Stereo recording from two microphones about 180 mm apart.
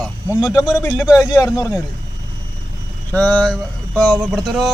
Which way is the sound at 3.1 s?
5° left (ahead or behind).